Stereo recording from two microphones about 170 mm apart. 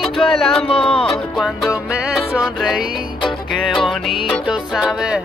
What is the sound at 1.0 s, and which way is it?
Music, centre (ahead or behind).